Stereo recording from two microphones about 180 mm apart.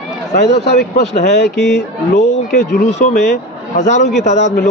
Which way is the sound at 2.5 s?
40° left (ahead or behind).